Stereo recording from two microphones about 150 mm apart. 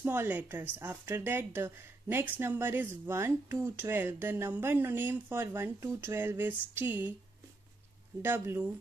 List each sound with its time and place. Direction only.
0.0 s a woman's voice: 15° right (ahead or behind)
8.2 s a woman's voice: 15° right (ahead or behind)